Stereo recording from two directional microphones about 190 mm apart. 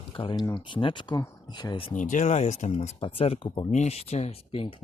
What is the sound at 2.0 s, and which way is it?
Speech, 40° left (ahead or behind).